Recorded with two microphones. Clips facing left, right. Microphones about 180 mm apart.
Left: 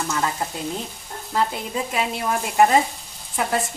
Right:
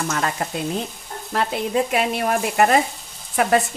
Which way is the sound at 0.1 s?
70° right (ahead or behind).